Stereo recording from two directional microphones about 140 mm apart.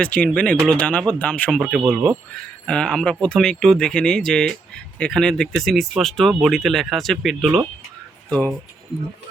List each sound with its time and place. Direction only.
0.0 s speech: 10° left (ahead or behind)
2.6 s speech: 5° left (ahead or behind)